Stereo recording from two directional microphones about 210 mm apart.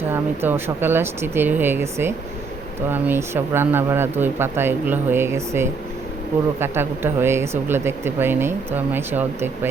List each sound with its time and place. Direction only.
0.1 s speech: 10° right (ahead or behind)